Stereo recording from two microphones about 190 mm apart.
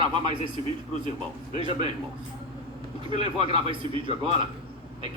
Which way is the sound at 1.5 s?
25° right (ahead or behind).